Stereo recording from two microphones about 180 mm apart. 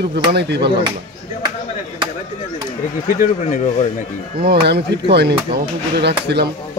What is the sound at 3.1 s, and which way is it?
Speech, 45° left (ahead or behind).